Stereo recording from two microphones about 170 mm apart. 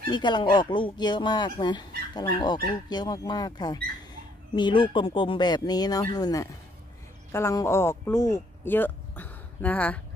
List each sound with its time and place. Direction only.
0.1 s speech: 25° left (ahead or behind); by 9.9 s 10° left (ahead or behind)